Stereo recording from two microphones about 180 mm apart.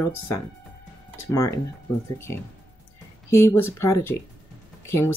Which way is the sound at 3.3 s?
15° left (ahead or behind).